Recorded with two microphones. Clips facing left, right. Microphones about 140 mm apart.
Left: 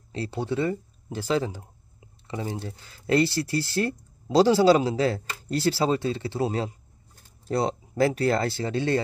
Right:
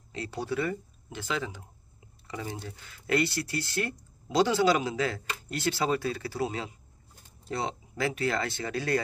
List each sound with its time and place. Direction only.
0.1 s speech: 30° left (ahead or behind)